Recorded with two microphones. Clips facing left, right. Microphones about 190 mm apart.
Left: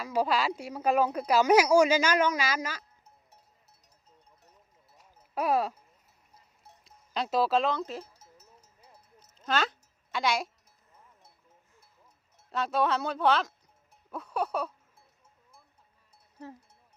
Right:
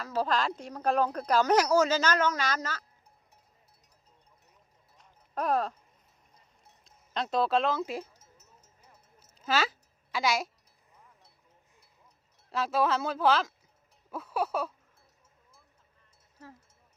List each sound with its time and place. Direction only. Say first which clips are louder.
0.0 s speech: left 2 dB; 10° left (ahead or behind)
4.9 s clip-clop: left 2 dB; 10° left (ahead or behind)
6.8 s speech: left 1 dB; 5° left (ahead or behind)
8.1 s sheep: left 3 dB; 35° left (ahead or behind)
9.4 s a sound: even; 5° right (ahead or behind)
12.5 s speech: even; 5° right (ahead or behind)
14.1 s a sound: even; 5° right (ahead or behind)